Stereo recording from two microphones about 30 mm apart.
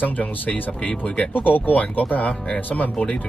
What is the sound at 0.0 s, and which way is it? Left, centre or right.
Speech, left.